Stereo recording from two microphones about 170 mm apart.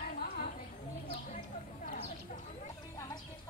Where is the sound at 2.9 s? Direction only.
20° left (ahead or behind).